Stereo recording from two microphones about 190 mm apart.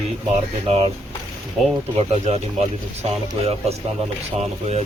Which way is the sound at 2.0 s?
35° right (ahead or behind).